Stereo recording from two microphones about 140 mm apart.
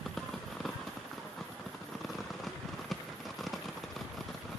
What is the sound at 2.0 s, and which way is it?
Fireworks, centre (ahead or behind).